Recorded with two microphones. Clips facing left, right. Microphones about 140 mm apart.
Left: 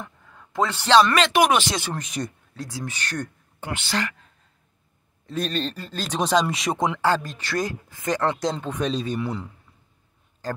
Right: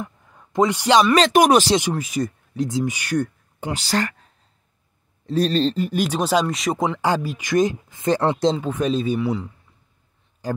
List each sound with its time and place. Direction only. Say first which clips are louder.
0.0 s a sound: right 6 dB; 20° right (ahead or behind)
1.1 s speech: right 5 dB; 40° right (ahead or behind)
2.0 s speech: right 6 dB; centre (ahead or behind)
2.5 s speech: right 10 dB; 20° right (ahead or behind)
3.7 s speech: right 4 dB; 40° right (ahead or behind)
5.8 s speech: right 6 dB; 15° right (ahead or behind)
7.0 s speech: right 1 dB; 10° right (ahead or behind)
8.5 s speech: right 4 dB; 5° right (ahead or behind)
10.4 s a man's voice: right 4 dB; 15° right (ahead or behind)